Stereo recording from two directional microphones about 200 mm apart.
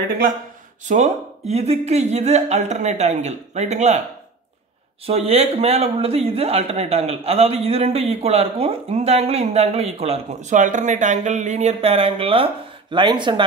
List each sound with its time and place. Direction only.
0.8 s speech: 35° right (ahead or behind)
5.0 s speech: 30° right (ahead or behind)